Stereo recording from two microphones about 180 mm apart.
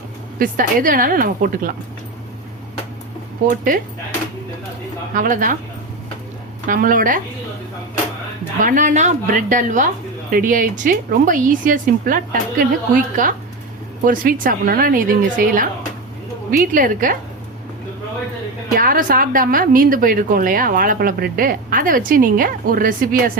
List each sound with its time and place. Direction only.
0.3 s a woman's voice: 50° right (ahead or behind)
3.4 s a woman's voice: 50° right (ahead or behind)
5.1 s a woman's voice: 50° right (ahead or behind)
6.7 s a woman's voice: 50° right (ahead or behind)
8.6 s a woman's voice: 45° right (ahead or behind)
14.0 s a woman's voice: 50° right (ahead or behind)
18.8 s a woman's voice: 50° right (ahead or behind)